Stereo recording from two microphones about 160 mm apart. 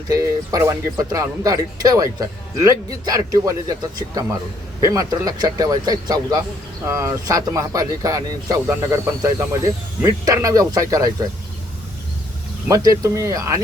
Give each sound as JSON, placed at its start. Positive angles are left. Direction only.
{"t": 0.1, "sound": "speech", "side_deg": -20}
{"t": 12.6, "sound": "speech", "side_deg": -20}